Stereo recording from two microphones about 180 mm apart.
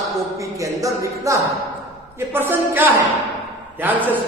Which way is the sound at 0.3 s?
20° right (ahead or behind).